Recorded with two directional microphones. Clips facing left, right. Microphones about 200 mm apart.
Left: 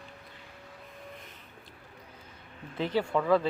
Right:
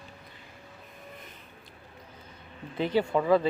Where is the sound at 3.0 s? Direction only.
15° right (ahead or behind).